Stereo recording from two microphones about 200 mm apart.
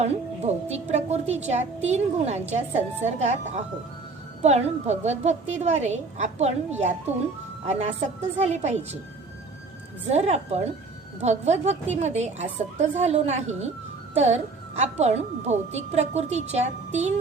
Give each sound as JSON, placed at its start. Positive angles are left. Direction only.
{"t": 0.0, "sound": "a woman's voice", "side_deg": -35}
{"t": 10.1, "sound": "a woman's voice", "side_deg": -30}